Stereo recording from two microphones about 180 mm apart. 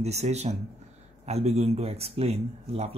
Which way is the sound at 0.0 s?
40° right (ahead or behind).